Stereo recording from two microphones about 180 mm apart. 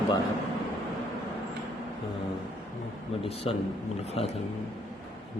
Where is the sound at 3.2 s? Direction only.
35° left (ahead or behind).